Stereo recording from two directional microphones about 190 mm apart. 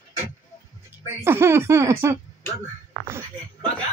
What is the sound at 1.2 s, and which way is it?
Speech, 15° right (ahead or behind).